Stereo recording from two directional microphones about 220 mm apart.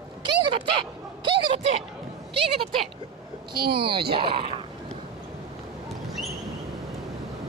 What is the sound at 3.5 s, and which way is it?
Speech, 45° right (ahead or behind).